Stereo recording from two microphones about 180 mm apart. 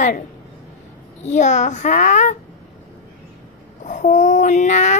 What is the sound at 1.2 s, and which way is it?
A child's voice, 40° left (ahead or behind).